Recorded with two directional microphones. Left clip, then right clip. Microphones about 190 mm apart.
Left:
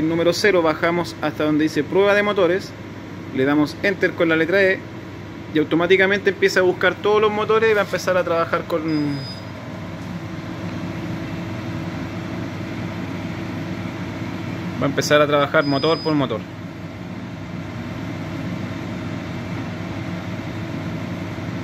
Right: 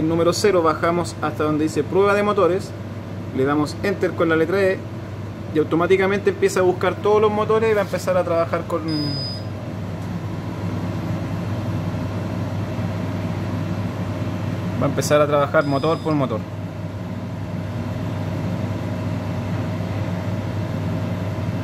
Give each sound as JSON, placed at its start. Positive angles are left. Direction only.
{"t": 0.1, "sound": "speech", "side_deg": 0}
{"t": 14.8, "sound": "speech", "side_deg": 5}